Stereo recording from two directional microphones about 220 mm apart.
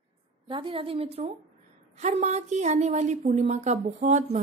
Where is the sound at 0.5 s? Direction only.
25° right (ahead or behind).